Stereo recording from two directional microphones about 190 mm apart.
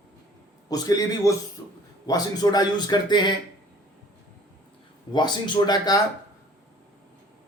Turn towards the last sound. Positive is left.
turn(degrees=20)  # may be behind; listen again after turning